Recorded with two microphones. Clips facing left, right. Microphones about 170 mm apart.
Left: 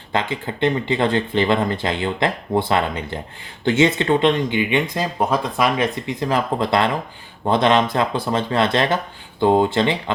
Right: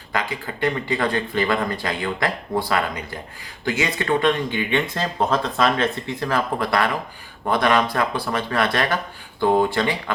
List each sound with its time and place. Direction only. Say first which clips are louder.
0.1 s speech: left 3 dB; 25° left (ahead or behind)